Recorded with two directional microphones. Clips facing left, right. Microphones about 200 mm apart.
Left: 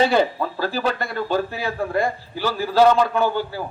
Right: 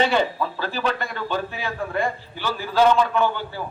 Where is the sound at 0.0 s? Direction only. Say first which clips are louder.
Left 3 dB; 35° left (ahead or behind).